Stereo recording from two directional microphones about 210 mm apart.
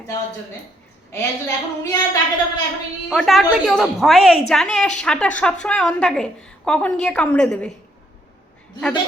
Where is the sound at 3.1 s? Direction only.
Centre (ahead or behind).